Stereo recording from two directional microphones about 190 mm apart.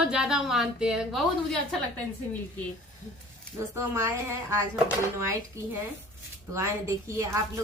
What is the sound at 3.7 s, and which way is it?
A woman's voice, 15° right (ahead or behind).